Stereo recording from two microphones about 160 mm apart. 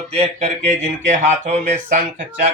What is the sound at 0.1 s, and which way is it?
Speech, 40° right (ahead or behind).